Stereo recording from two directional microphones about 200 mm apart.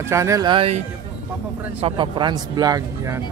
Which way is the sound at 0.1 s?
15° right (ahead or behind).